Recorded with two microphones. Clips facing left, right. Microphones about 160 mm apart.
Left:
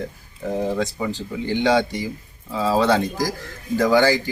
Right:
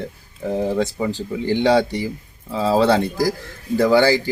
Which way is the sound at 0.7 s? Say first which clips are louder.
Right 3 dB; 35° right (ahead or behind).